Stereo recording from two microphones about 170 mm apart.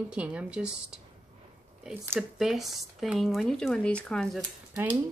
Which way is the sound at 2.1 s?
Centre (ahead or behind).